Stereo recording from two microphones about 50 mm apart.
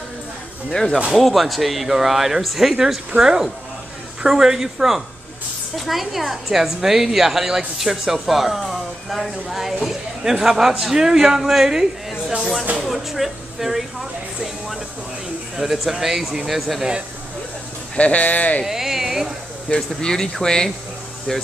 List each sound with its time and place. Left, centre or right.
0.7 s speech: centre
1.1 s a woman's voice: centre
15.5 s a woman's voice: centre
17.9 s speech: left
18.7 s a sound: centre
20.0 s speech: centre